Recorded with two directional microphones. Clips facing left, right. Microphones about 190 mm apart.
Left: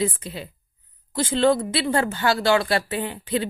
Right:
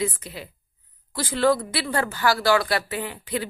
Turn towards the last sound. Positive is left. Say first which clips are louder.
# left 3 dB
turn(degrees=30)  # may be behind; listen again after turning